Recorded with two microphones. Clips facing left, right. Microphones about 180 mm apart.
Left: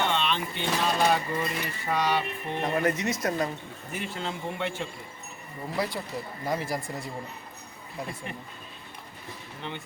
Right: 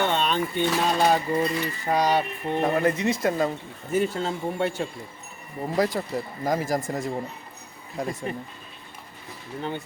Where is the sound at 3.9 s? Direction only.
40° right (ahead or behind).